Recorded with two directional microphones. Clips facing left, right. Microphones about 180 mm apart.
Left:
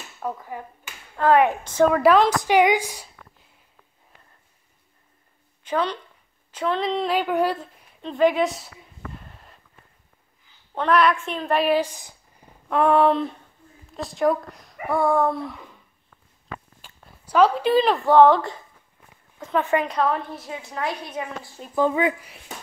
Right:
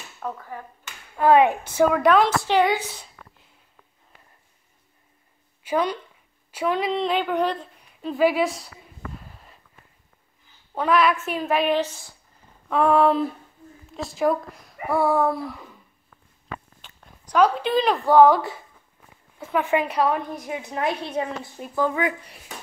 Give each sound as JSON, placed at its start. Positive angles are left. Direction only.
{"t": 0.2, "sound": "speech", "side_deg": 15}
{"t": 1.1, "sound": "a woman's voice", "side_deg": -15}
{"t": 2.4, "sound": "a woman's voice", "side_deg": 15}
{"t": 5.6, "sound": "speech", "side_deg": -10}
{"t": 8.0, "sound": "speech", "side_deg": -5}
{"t": 9.1, "sound": "a sound", "side_deg": 0}
{"t": 10.7, "sound": "speech", "side_deg": -5}
{"t": 12.6, "sound": "speech", "side_deg": 0}
{"t": 16.8, "sound": "a woman's voice", "side_deg": 5}
{"t": 21.7, "sound": "speech", "side_deg": 20}